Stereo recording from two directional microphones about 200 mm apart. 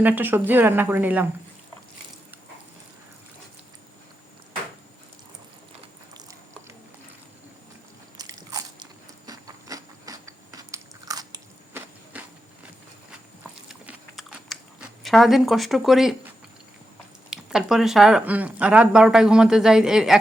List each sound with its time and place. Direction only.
0.0 s speech: 10° right (ahead or behind)
6.1 s biting: 15° right (ahead or behind)
8.2 s biting: 20° right (ahead or behind)
12.1 s a sound: 5° right (ahead or behind)
13.7 s chewing: 5° right (ahead or behind)
17.2 s speech: 5° right (ahead or behind)